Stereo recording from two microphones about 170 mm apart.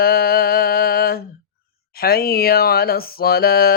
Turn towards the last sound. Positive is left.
turn(degrees=65)  # may be behind; listen again after turning